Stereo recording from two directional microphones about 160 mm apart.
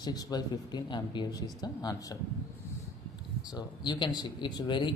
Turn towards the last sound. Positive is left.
turn(degrees=30)  # may be behind; listen again after turning